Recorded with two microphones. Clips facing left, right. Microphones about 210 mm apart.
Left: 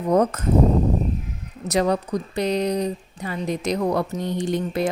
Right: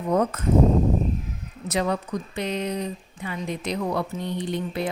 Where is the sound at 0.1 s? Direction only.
40° left (ahead or behind).